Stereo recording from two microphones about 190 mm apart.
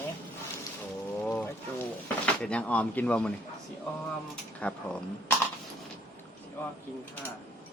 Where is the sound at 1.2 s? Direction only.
10° left (ahead or behind).